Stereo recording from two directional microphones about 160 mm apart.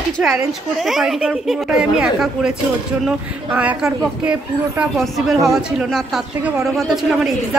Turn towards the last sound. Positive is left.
turn(degrees=0)  # may be behind; listen again after turning